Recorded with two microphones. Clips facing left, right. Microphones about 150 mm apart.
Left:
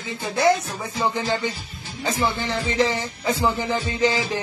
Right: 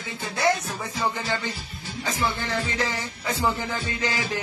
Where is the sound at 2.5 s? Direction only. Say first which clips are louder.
Left 5 dB; 20° left (ahead or behind).